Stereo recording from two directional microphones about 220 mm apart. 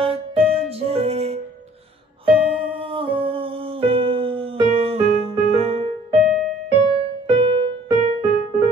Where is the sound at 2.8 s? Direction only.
25° right (ahead or behind).